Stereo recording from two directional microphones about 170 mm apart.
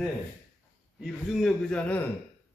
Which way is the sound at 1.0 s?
Centre (ahead or behind).